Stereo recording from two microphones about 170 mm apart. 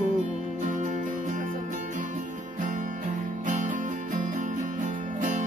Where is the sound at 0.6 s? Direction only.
50° right (ahead or behind).